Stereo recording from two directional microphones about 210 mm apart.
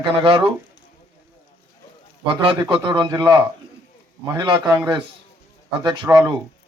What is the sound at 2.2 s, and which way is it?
A man's voice, 25° right (ahead or behind).